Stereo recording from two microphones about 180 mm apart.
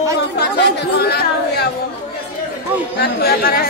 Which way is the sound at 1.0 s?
60° left (ahead or behind).